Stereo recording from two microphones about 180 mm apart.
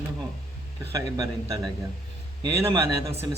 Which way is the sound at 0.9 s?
20° right (ahead or behind).